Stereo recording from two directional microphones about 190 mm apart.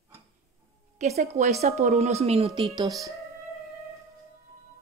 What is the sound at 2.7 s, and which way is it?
Speech, 20° right (ahead or behind).